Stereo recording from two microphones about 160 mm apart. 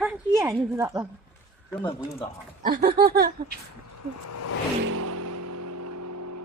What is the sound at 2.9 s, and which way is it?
Speech, 70° right (ahead or behind).